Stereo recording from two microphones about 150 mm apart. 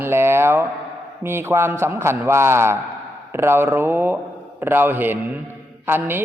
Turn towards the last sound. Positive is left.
turn(degrees=-15)  # may be behind; listen again after turning